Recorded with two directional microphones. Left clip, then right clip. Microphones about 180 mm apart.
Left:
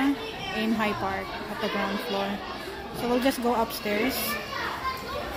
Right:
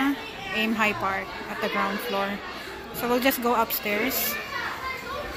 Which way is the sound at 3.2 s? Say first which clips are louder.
Right 3 dB; 5° left (ahead or behind).